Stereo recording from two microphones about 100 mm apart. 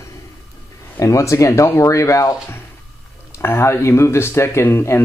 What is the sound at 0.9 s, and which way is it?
Speech, 30° left (ahead or behind).